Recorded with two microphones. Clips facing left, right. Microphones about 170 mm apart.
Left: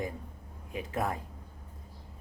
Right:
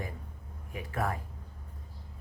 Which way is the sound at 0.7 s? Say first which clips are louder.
Left 1 dB; 20° left (ahead or behind).